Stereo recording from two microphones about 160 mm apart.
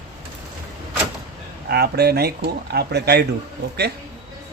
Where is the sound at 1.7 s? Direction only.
80° right.